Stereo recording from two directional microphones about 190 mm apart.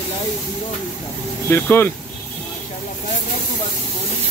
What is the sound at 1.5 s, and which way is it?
Speech, 10° left (ahead or behind).